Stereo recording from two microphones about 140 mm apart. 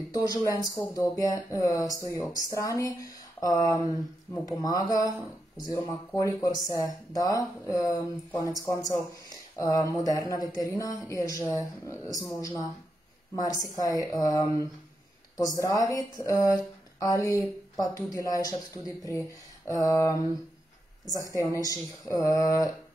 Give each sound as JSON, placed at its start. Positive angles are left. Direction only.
{"t": 0.1, "sound": "speech", "side_deg": 25}
{"t": 22.1, "sound": "speech", "side_deg": 25}